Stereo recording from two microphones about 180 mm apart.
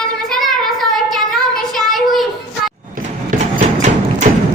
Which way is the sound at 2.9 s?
45° right (ahead or behind).